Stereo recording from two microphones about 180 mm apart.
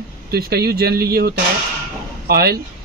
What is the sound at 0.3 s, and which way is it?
Speech, 60° right (ahead or behind).